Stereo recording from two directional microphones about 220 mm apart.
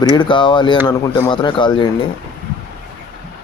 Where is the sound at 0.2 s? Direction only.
20° left (ahead or behind).